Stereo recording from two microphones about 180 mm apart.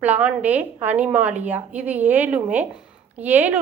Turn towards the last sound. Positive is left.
turn(degrees=-10)  # may be behind; listen again after turning